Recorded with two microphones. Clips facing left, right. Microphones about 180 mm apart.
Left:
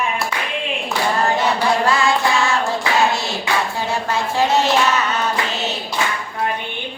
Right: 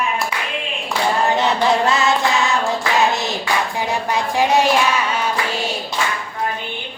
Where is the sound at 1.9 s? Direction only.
20° right (ahead or behind).